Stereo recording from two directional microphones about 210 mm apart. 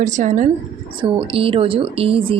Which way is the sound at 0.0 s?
35° right (ahead or behind).